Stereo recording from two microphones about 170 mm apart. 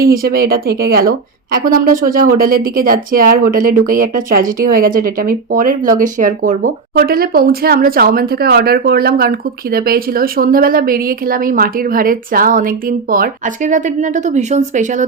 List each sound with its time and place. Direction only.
0.0 s speech: 60° right (ahead or behind); by 15.0 s 45° right (ahead or behind)